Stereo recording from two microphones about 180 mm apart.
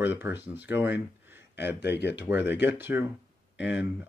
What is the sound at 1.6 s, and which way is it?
Speech, 70° left (ahead or behind).